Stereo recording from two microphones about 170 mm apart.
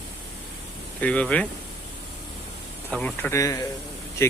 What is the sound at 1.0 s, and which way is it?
Speech, 5° left (ahead or behind).